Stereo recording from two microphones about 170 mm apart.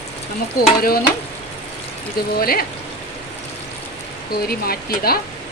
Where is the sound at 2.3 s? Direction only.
60° left (ahead or behind).